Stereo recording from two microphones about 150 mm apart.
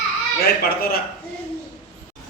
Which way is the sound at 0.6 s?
90° left.